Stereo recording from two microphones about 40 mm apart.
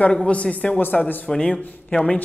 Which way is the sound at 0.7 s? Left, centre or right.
Left.